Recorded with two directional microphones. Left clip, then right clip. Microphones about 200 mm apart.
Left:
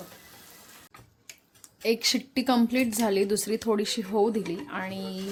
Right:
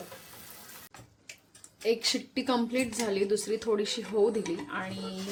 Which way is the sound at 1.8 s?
50° left (ahead or behind).